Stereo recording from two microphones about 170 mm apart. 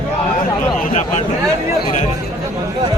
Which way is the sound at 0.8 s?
45° left (ahead or behind).